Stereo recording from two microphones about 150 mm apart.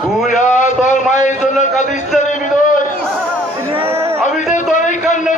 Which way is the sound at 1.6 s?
50° left (ahead or behind).